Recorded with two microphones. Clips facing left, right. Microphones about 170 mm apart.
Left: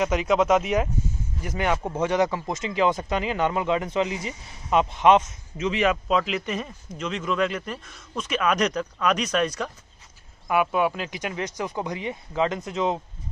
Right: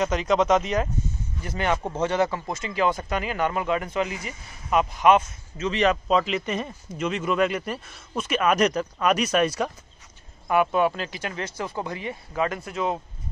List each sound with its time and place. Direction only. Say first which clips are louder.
0.0 s speech: even; 10° left (ahead or behind); by 9.7 s 5° right (ahead or behind)
10.5 s speech: right 1 dB; 10° left (ahead or behind)